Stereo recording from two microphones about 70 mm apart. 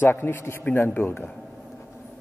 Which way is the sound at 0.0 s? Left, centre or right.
Left.